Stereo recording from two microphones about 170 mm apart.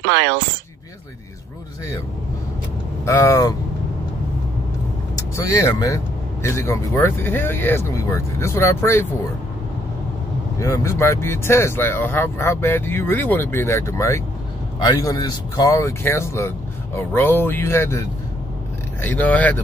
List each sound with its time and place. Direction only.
0.0 s speech: 90° right
3.1 s speech: 20° left (ahead or behind)
5.3 s speech: 20° left (ahead or behind)
10.6 s speech: 15° left (ahead or behind)